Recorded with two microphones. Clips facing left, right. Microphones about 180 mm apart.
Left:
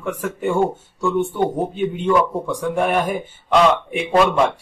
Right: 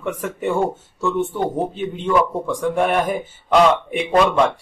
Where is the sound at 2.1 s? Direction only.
Centre (ahead or behind).